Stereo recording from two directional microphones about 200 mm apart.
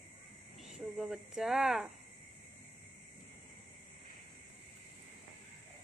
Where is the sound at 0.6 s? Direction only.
Centre (ahead or behind).